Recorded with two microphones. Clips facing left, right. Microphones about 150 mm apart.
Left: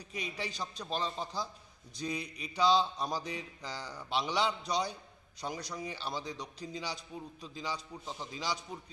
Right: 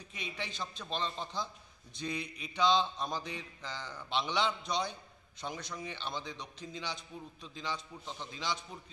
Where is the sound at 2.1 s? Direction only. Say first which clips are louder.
Even; 35° left (ahead or behind).